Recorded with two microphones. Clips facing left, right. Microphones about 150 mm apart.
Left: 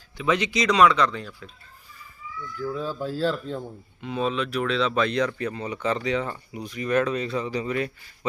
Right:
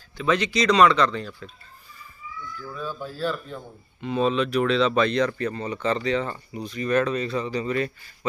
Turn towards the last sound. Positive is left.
turn(degrees=10)  # may be behind; listen again after turning